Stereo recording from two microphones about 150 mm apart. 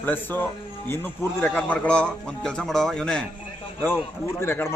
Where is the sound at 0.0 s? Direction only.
15° left (ahead or behind).